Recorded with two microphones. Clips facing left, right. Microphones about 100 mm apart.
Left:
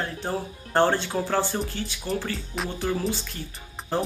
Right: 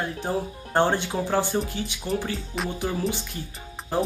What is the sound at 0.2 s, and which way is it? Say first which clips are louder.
Speech: right 2 dB; 15° right (ahead or behind).